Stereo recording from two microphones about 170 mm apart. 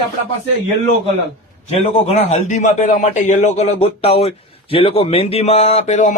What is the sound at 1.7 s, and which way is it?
A man's voice, 40° left (ahead or behind).